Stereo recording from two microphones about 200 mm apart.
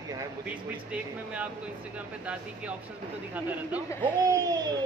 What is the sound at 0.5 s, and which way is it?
Speech, 5° right (ahead or behind).